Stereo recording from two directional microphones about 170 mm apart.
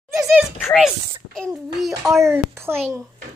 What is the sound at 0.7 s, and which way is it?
Speech, 5° left (ahead or behind).